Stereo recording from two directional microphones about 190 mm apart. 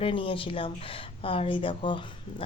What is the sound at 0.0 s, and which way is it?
A woman's voice, 30° left (ahead or behind).